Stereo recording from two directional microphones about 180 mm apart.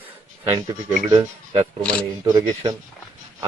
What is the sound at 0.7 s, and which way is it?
A man's voice, 25° right (ahead or behind).